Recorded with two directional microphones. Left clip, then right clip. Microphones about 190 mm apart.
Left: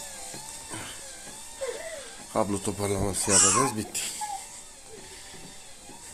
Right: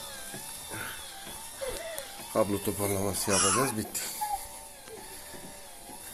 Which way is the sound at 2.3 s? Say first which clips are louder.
Even; 15° left (ahead or behind).